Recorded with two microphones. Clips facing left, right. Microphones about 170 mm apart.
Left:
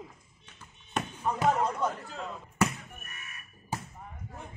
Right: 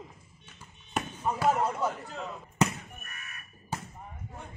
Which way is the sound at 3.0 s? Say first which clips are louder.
Right 1 dB; 25° left (ahead or behind).